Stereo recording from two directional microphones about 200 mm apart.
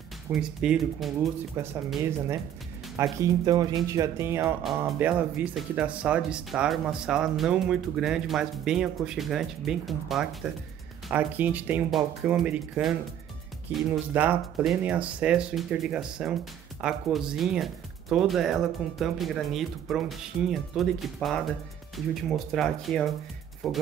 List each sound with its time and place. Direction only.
0.3 s speech: 5° right (ahead or behind)
1.6 s speech: 15° right (ahead or behind)
4.6 s speech: centre (ahead or behind)